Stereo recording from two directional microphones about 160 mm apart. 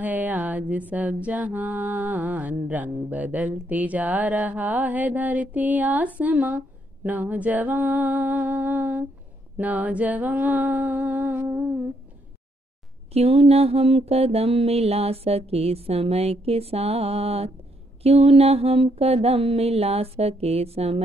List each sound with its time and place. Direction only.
0.0 s mantra: 10° right (ahead or behind)
13.1 s mantra: 40° right (ahead or behind)